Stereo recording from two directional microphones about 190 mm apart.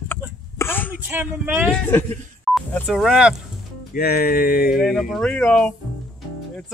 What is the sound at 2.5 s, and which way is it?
Telephone dialing, centre (ahead or behind).